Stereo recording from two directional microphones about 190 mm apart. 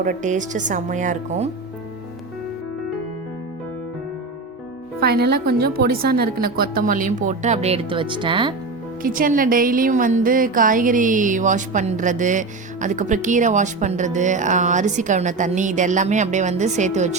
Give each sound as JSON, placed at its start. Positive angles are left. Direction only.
{"t": 0.0, "sound": "speech", "side_deg": -40}
{"t": 4.9, "sound": "a woman's voice", "side_deg": -55}
{"t": 9.0, "sound": "speech", "side_deg": -45}